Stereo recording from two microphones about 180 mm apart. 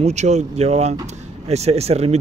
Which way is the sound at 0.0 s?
40° right (ahead or behind).